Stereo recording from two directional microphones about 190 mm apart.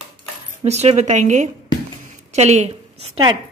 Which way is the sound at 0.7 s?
35° right (ahead or behind).